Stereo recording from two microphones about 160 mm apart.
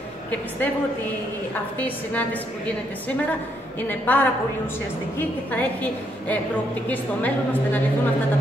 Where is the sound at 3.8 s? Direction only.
10° left (ahead or behind).